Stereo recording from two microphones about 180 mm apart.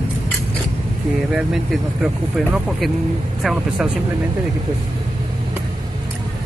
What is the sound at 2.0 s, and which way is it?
Speech, centre (ahead or behind).